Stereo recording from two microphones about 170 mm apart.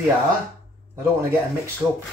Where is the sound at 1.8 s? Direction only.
5° right (ahead or behind).